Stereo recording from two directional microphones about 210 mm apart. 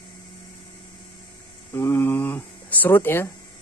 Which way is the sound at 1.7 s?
10° left (ahead or behind).